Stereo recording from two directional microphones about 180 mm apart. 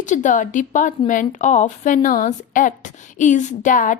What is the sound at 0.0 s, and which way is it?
A woman's voice, 45° left (ahead or behind).